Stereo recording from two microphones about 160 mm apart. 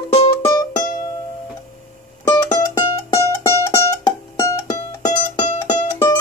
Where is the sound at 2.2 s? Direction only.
20° left (ahead or behind).